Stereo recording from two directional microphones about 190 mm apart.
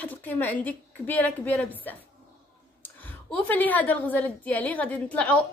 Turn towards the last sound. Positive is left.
turn(degrees=5)  # may be behind; listen again after turning